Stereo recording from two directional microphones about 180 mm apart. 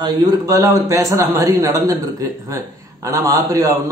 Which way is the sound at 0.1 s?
20° right (ahead or behind).